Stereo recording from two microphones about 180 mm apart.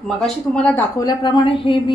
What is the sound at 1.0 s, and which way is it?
Speech, 25° left (ahead or behind).